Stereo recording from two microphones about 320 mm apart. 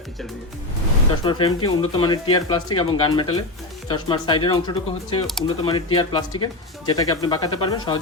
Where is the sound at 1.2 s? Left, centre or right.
Centre.